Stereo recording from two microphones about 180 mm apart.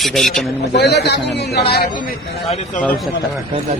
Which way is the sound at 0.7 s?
70° left (ahead or behind).